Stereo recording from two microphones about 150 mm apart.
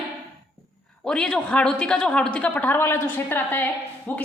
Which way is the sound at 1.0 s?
5° left (ahead or behind).